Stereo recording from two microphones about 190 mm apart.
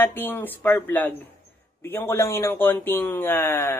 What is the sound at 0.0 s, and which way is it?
Speech, 10° left (ahead or behind).